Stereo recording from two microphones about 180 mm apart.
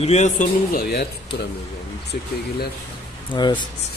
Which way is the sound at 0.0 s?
40° left (ahead or behind).